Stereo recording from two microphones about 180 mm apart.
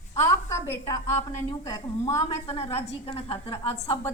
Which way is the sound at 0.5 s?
15° left (ahead or behind).